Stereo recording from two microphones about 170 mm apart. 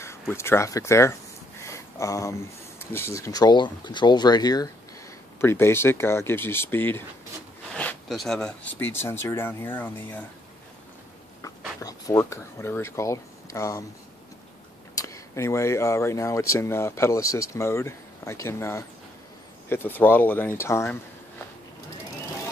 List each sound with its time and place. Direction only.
0.3 s speech: 15° left (ahead or behind)
1.6 s a sound: 15° left (ahead or behind)
2.8 s speech: 15° left (ahead or behind)
11.4 s speech: 20° left (ahead or behind)
15.0 s speech: 20° left (ahead or behind)